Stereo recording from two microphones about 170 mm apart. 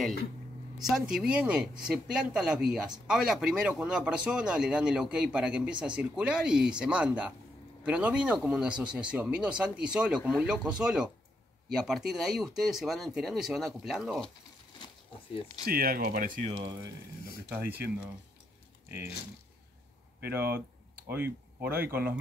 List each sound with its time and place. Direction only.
0.8 s speech: 5° right (ahead or behind)
15.6 s speech: 60° right (ahead or behind)
17.5 s speech: 10° right (ahead or behind)
20.2 s speech: 15° right (ahead or behind)